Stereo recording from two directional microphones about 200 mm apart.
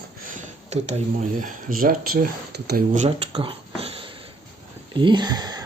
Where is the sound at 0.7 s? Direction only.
35° right (ahead or behind); by 2.8 s 55° right (ahead or behind).